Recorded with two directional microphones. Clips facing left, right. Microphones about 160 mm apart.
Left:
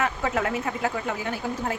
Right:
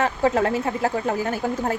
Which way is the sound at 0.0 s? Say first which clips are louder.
Right 5 dB; 30° right (ahead or behind).